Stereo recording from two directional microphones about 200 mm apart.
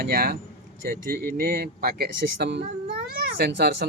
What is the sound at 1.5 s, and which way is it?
Speech, 50° right (ahead or behind).